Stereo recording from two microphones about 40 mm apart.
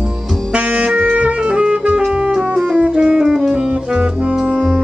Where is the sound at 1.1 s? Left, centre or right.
Right.